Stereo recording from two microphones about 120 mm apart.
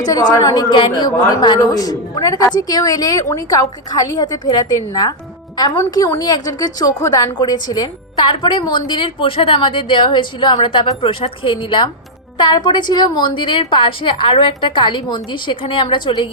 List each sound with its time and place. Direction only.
0.0 s a woman's voice: 30° left (ahead or behind)